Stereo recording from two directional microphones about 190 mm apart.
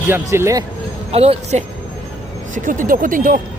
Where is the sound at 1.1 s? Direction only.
35° right (ahead or behind).